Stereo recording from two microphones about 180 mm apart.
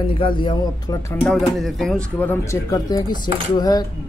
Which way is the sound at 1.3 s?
Centre (ahead or behind).